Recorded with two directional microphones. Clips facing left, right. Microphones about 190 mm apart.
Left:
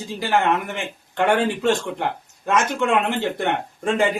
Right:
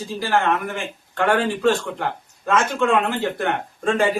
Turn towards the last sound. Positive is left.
turn(degrees=20)  # may be behind; listen again after turning